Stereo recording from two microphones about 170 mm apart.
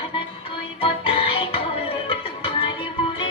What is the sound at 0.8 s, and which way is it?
Music, 35° left (ahead or behind).